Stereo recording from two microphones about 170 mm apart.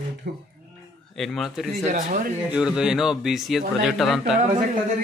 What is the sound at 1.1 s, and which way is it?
Speech, centre (ahead or behind).